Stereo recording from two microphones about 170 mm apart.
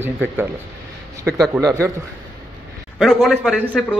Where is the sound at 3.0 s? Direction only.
Centre (ahead or behind).